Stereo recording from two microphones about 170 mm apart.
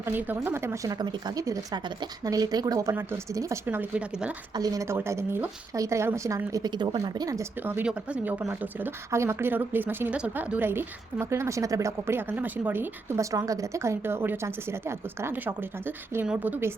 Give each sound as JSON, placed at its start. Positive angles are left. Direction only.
{"t": 0.0, "sound": "a woman's voice", "side_deg": -10}
{"t": 4.5, "sound": "a woman's voice", "side_deg": -20}